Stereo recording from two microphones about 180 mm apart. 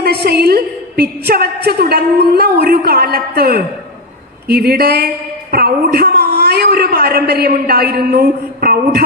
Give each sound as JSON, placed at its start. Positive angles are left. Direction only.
{"t": 0.0, "sound": "speech", "side_deg": -60}